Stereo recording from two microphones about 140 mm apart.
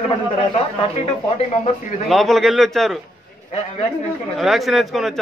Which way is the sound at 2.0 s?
Centre (ahead or behind).